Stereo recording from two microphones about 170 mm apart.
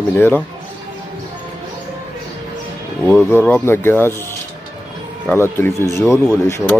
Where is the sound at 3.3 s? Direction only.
10° left (ahead or behind).